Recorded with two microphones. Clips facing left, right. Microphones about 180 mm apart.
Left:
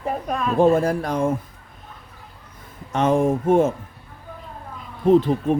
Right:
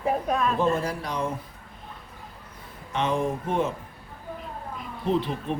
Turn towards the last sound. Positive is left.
turn(degrees=45)  # may be behind; listen again after turning